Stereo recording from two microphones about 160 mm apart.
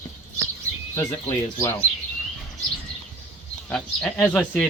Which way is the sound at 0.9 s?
20° left (ahead or behind).